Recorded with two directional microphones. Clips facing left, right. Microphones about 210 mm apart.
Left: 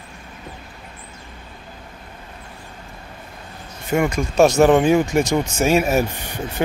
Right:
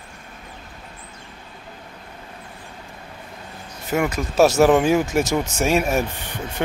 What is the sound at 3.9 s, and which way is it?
Speech, 5° right (ahead or behind).